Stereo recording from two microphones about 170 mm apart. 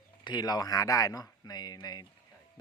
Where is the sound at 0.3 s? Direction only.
25° left (ahead or behind).